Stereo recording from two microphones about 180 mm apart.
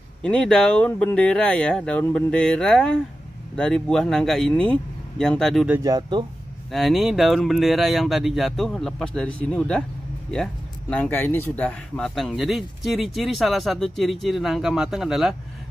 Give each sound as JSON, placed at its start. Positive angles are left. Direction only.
{"t": 0.2, "sound": "speech", "side_deg": 5}
{"t": 5.8, "sound": "speech", "side_deg": -20}
{"t": 6.7, "sound": "speech", "side_deg": 0}